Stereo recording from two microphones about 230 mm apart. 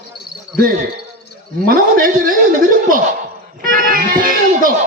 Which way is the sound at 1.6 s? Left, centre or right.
Right.